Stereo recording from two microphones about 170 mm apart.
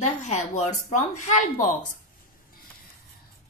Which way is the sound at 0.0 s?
40° left (ahead or behind).